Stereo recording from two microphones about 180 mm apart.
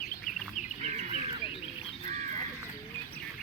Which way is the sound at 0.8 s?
40° right (ahead or behind).